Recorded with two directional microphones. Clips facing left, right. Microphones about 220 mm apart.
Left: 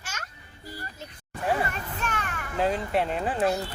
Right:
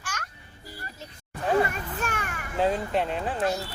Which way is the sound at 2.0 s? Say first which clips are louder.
Even; 10° right (ahead or behind).